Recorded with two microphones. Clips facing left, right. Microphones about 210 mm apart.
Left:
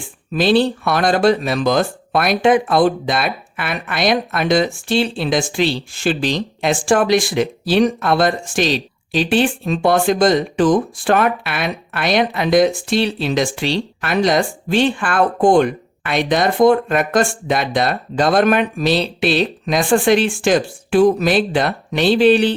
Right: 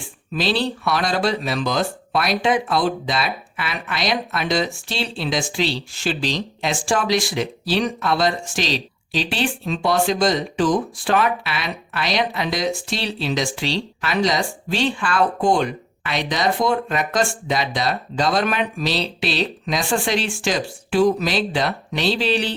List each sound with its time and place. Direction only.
0.3 s speech: 50° left (ahead or behind)